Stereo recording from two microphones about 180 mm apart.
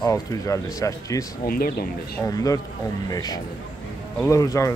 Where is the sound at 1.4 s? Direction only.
55° left (ahead or behind).